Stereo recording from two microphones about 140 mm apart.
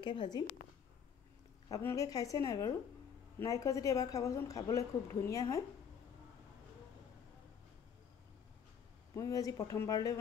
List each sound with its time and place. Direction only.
0.0 s a woman's voice: 35° left (ahead or behind)
1.7 s a woman's voice: 20° left (ahead or behind)
9.1 s a woman's voice: 25° left (ahead or behind)